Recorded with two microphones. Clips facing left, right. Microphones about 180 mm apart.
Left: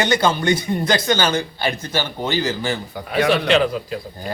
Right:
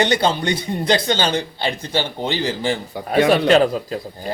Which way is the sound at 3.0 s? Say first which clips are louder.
Right 3 dB; 40° right (ahead or behind).